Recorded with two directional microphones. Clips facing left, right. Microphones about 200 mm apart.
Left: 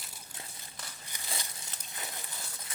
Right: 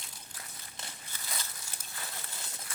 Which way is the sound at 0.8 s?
25° right (ahead or behind).